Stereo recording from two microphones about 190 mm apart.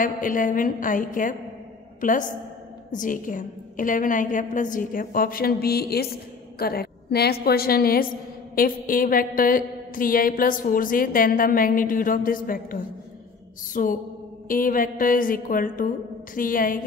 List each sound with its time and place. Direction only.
0.0 s a woman's voice: 45° left (ahead or behind)